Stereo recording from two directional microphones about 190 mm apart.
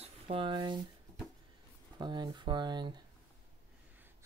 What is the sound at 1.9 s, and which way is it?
Speech, 25° right (ahead or behind).